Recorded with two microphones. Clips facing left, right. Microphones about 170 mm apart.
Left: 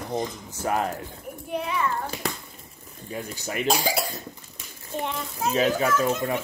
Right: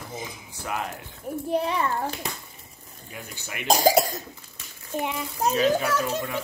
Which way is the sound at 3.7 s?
40° right (ahead or behind).